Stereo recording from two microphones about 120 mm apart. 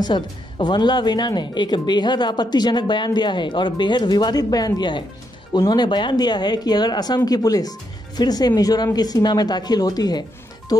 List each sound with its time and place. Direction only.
0.0 s speech: 40° left (ahead or behind)